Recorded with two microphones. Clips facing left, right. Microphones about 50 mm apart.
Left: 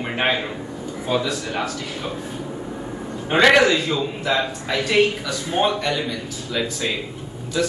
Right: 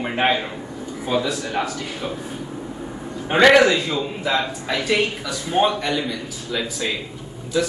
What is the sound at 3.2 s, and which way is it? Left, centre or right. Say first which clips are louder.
A man's voice: right 1 dB; centre.